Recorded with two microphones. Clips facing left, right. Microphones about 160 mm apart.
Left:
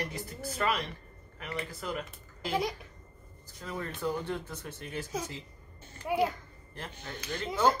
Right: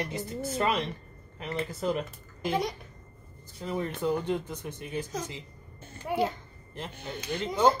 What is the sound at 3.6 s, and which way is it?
Speech, 20° right (ahead or behind).